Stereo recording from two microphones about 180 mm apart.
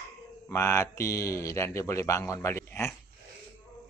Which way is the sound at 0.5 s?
15° left (ahead or behind).